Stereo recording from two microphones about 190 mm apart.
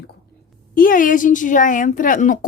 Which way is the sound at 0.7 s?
45° left (ahead or behind).